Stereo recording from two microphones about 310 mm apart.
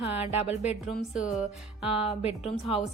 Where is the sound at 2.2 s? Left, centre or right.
Centre.